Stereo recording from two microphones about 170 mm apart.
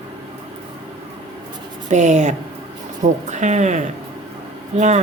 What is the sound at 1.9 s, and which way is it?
Speech, 45° right (ahead or behind).